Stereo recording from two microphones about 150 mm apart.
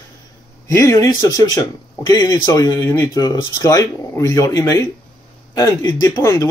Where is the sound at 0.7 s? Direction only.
20° left (ahead or behind).